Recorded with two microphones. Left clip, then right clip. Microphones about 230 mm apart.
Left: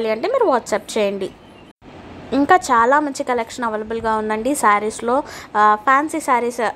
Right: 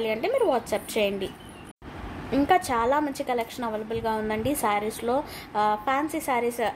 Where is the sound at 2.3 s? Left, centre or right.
Centre.